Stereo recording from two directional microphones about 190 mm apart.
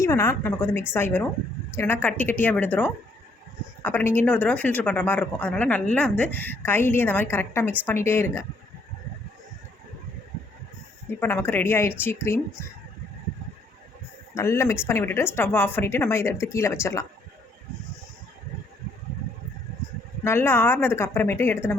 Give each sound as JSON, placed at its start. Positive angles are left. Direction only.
{"t": 0.0, "sound": "speech", "side_deg": 15}
{"t": 11.2, "sound": "speech", "side_deg": 10}
{"t": 14.3, "sound": "speech", "side_deg": 15}
{"t": 20.2, "sound": "speech", "side_deg": 10}